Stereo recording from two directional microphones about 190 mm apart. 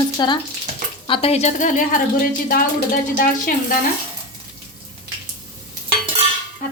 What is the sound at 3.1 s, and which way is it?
Speech, 45° left (ahead or behind).